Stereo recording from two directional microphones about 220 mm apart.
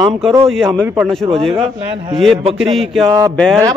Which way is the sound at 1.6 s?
25° right (ahead or behind).